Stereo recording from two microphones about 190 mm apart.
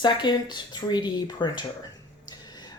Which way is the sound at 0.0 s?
25° left (ahead or behind).